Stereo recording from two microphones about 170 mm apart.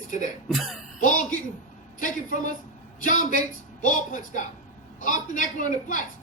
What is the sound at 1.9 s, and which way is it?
A woman's voice, 50° left (ahead or behind).